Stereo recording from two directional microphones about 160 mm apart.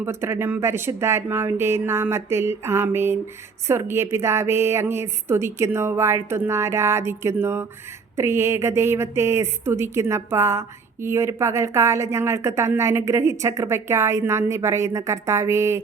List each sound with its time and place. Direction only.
0.0 s a woman's voice: 15° right (ahead or behind)